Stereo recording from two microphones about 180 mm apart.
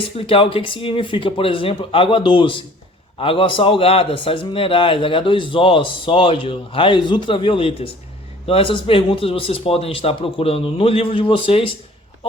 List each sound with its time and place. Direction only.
0.2 s a man's voice: 30° left (ahead or behind)